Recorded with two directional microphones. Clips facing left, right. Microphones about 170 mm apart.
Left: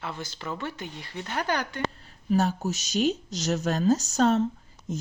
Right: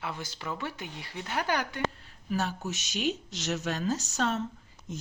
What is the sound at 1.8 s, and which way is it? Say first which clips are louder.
Speech: left 1 dB; 35° left (ahead or behind).